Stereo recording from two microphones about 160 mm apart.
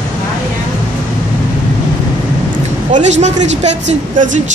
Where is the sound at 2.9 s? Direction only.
45° right (ahead or behind).